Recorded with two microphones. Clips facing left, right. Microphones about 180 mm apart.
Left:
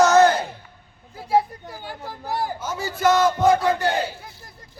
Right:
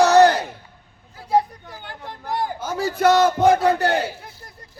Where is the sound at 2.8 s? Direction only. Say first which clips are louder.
Right 3 dB; 65° right (ahead or behind).